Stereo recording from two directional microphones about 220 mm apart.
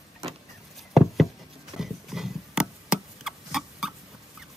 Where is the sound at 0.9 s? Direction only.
Centre (ahead or behind).